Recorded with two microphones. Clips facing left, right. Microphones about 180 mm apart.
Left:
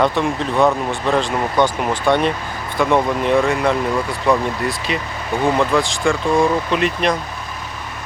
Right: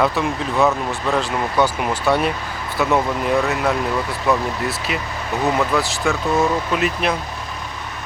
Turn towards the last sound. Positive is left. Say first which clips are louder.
# left 2 dB
turn(degrees=-5)  # may be behind; listen again after turning